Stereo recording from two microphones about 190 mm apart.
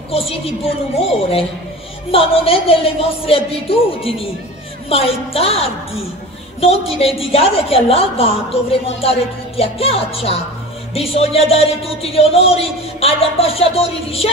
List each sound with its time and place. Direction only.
0.1 s a woman's voice: 30° left (ahead or behind)